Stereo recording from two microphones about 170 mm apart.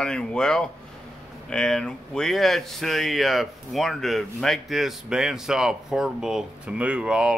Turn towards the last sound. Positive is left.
turn(degrees=-5)  # may be behind; listen again after turning